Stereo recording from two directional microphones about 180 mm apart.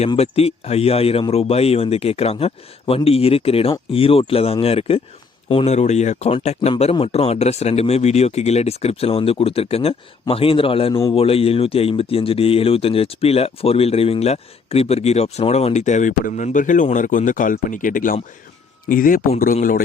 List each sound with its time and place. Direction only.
0.1 s speech: 35° left (ahead or behind); by 19.2 s 50° left (ahead or behind)